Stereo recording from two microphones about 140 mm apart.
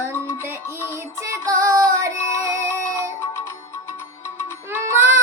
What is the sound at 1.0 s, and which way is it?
Child singing, 20° right (ahead or behind).